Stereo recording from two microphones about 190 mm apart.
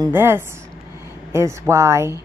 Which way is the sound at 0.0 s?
10° right (ahead or behind).